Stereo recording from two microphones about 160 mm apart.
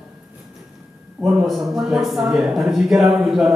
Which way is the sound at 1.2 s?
Centre (ahead or behind).